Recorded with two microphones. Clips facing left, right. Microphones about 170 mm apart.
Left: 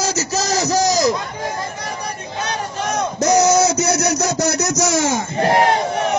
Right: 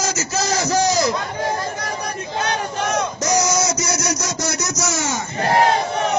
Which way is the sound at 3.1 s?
65° left (ahead or behind).